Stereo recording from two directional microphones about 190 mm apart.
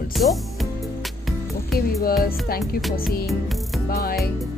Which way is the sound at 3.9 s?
55° left (ahead or behind).